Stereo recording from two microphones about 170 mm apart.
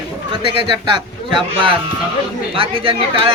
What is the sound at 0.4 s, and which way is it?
Speech, 30° right (ahead or behind).